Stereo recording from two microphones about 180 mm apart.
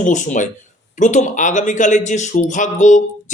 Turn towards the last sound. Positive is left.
turn(degrees=45)  # may be behind; listen again after turning